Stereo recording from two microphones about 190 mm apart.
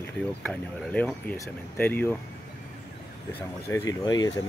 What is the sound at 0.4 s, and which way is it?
Speech, 5° left (ahead or behind).